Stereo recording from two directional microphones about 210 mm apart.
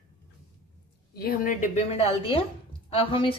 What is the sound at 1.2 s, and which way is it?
A woman's voice, 40° left (ahead or behind).